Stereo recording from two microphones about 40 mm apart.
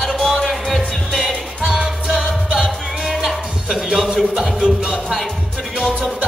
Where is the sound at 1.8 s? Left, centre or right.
Centre.